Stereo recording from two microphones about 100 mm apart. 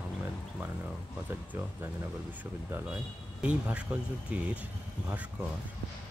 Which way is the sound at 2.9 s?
10° right (ahead or behind).